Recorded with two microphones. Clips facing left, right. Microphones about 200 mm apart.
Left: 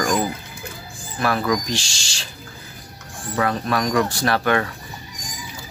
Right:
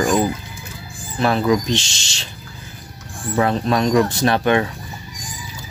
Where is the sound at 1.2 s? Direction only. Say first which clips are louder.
Right 4 dB; 25° right (ahead or behind).